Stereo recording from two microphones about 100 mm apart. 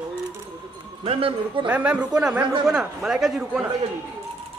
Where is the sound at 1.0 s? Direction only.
65° right (ahead or behind).